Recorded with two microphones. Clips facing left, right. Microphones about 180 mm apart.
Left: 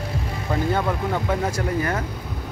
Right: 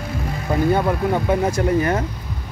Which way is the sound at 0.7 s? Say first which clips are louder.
Right 4 dB; 15° right (ahead or behind).